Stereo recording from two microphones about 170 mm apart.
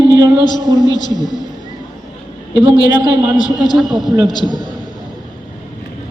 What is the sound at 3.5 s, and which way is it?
Speech, centre (ahead or behind).